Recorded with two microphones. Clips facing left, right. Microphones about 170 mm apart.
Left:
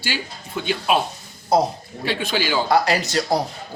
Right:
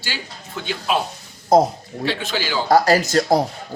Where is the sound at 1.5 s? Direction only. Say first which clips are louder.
Right 4 dB; 45° right (ahead or behind).